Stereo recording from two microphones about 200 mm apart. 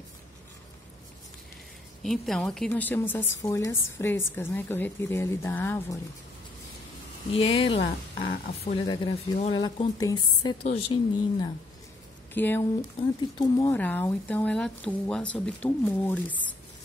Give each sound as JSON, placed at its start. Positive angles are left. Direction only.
{"t": 2.0, "sound": "a woman's voice", "side_deg": 0}
{"t": 7.2, "sound": "speech", "side_deg": 30}
{"t": 12.4, "sound": "a woman's voice", "side_deg": 10}